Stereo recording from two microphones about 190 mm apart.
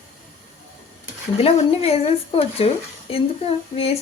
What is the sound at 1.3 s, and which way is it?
Speech, 30° left (ahead or behind).